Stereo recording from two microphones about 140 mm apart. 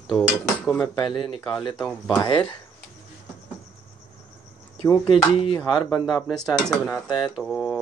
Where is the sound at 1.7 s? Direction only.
5° left (ahead or behind).